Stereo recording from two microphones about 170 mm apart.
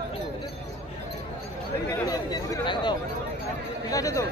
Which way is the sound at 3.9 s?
20° left (ahead or behind).